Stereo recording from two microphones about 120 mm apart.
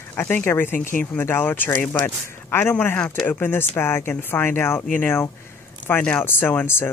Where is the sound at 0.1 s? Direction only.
15° left (ahead or behind).